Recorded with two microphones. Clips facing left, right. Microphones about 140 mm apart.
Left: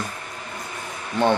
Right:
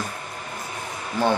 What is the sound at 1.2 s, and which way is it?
Speech, 5° right (ahead or behind).